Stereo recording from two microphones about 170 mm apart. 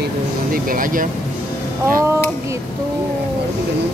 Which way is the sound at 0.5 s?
55° right (ahead or behind).